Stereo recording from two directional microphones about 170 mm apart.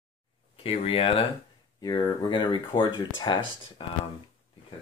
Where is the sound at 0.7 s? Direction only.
35° left (ahead or behind).